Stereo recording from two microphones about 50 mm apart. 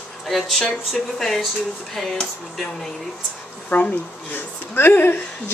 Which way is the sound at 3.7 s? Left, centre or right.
Left.